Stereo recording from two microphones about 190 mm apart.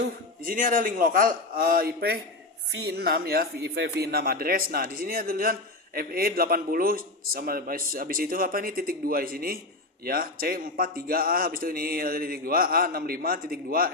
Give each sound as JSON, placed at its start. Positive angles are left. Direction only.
{"t": 0.4, "sound": "speech", "side_deg": -45}